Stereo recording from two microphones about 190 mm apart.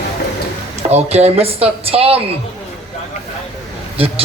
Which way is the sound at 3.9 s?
30° right (ahead or behind).